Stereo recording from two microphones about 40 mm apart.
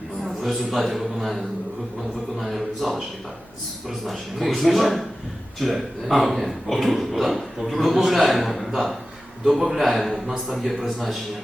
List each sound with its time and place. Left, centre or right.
0.4 s speech: centre